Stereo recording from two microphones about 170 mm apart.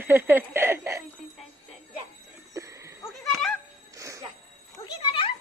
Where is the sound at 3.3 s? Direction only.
Centre (ahead or behind).